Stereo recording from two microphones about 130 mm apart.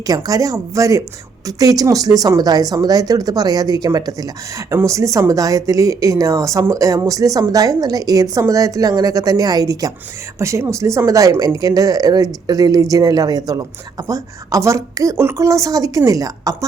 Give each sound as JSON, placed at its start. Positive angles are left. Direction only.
{"t": 0.1, "sound": "speech", "side_deg": -30}